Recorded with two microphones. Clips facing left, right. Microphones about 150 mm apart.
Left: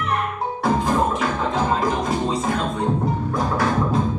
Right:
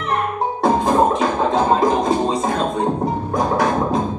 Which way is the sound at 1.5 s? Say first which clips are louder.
Right 6 dB; 25° right (ahead or behind).